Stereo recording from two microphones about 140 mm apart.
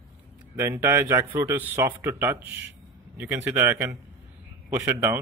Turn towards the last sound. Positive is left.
turn(degrees=-15)  # may be behind; listen again after turning